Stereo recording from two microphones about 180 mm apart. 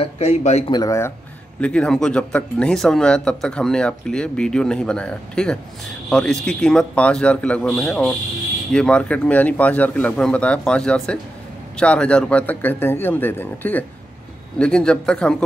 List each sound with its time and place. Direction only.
0.0 s speech: 35° left (ahead or behind)
0.7 s a man's voice: 20° left (ahead or behind)
1.6 s a man's voice: 5° left (ahead or behind)